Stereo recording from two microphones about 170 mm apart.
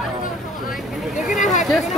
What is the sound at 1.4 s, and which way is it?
Speech, 45° left (ahead or behind).